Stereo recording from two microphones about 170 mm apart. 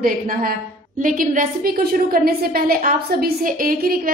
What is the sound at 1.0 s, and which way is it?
A woman's voice, 50° right (ahead or behind).